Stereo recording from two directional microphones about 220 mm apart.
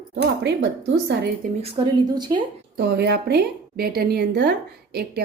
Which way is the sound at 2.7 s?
50° right (ahead or behind).